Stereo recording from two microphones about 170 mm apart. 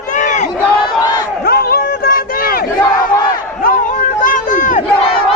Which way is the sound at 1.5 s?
65° left (ahead or behind).